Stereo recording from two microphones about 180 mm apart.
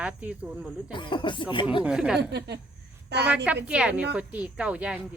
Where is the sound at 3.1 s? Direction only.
65° right (ahead or behind).